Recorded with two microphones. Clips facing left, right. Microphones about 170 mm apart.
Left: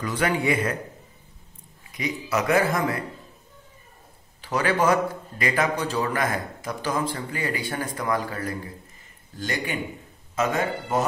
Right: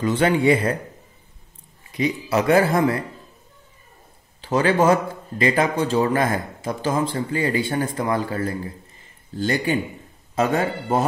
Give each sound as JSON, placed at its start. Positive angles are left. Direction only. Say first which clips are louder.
{"t": 0.0, "sound": "a man's voice", "louder": "right 6 dB", "side_deg": -25}
{"t": 1.9, "sound": "a man's voice", "louder": "right 6 dB", "side_deg": -30}
{"t": 4.4, "sound": "a man's voice", "louder": "right 5 dB", "side_deg": -25}